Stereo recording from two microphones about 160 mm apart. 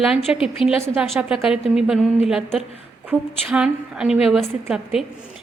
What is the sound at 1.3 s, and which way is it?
A woman's voice, 5° right (ahead or behind).